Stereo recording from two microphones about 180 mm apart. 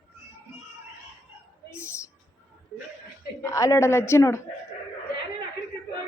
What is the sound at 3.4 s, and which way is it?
Speech, 20° left (ahead or behind).